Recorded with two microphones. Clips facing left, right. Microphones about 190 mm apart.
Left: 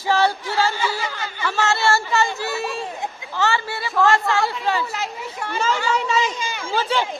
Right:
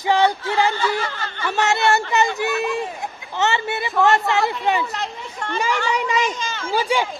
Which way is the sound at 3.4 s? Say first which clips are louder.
Right 1 dB; 20° right (ahead or behind).